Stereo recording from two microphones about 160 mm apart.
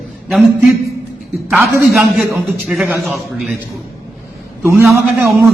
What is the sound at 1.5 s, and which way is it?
Speech, 15° right (ahead or behind).